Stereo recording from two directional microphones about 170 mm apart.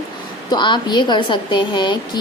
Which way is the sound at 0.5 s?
25° left (ahead or behind).